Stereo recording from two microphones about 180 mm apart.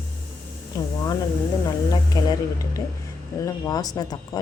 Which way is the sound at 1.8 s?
20° left (ahead or behind).